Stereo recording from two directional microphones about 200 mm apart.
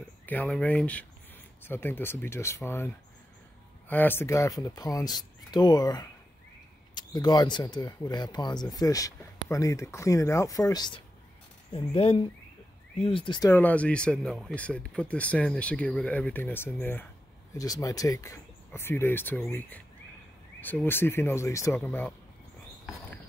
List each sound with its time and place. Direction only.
0.3 s speech: 5° left (ahead or behind)
3.9 s speech: 10° left (ahead or behind)